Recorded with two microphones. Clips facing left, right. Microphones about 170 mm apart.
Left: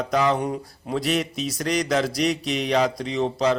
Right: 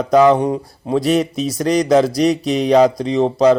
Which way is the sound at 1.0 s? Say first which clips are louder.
Right 8 dB; 40° right (ahead or behind).